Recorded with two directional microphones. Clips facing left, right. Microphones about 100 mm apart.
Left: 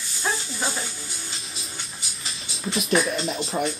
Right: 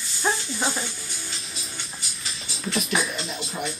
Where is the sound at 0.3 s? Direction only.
15° right (ahead or behind).